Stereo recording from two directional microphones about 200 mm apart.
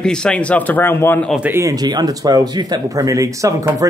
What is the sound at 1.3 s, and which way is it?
Speech, 10° right (ahead or behind).